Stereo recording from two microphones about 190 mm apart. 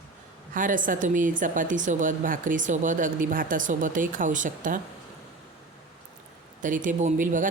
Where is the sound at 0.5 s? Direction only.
45° right (ahead or behind).